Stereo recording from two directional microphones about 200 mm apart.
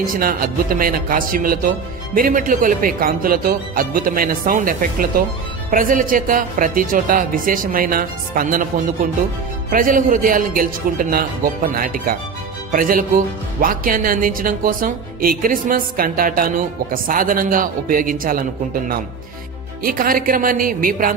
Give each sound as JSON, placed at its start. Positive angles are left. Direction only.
{"t": 0.0, "sound": "speech", "side_deg": -45}
{"t": 19.8, "sound": "speech", "side_deg": -45}